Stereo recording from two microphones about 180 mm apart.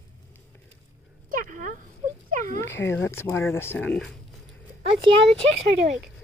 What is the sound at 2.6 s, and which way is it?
Speech, 15° left (ahead or behind).